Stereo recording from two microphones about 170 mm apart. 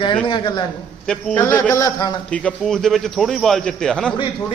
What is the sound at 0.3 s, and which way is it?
Speech, 30° left (ahead or behind).